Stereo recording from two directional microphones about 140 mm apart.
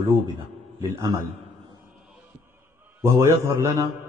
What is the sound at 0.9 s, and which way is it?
Speech, 20° right (ahead or behind).